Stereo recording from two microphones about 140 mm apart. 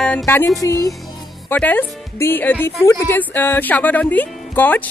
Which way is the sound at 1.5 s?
10° left (ahead or behind).